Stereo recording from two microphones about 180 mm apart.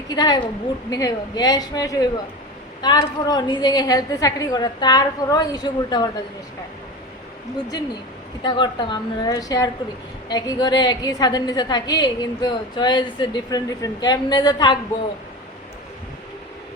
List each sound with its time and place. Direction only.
0.1 s a woman's voice: 25° left (ahead or behind)
8.4 s a woman's voice: 25° left (ahead or behind)